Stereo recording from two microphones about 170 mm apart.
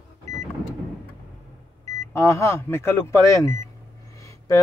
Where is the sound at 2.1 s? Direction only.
15° left (ahead or behind).